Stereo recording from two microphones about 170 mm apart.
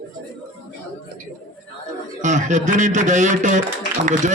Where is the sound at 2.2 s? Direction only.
45° right (ahead or behind).